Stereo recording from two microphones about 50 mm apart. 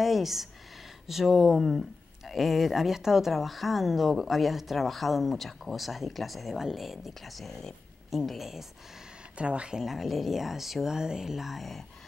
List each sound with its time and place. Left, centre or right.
0.0 s a sound: centre
1.0 s speech: centre
8.2 s speech: centre
9.4 s speech: right
9.8 s speech: centre